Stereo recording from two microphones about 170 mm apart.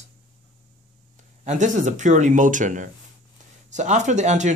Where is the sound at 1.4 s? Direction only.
45° right (ahead or behind).